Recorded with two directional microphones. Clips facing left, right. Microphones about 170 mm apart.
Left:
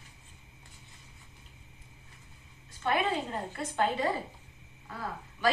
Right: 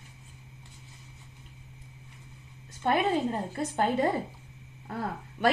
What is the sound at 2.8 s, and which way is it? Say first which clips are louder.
Speech: right 4 dB; 40° right (ahead or behind).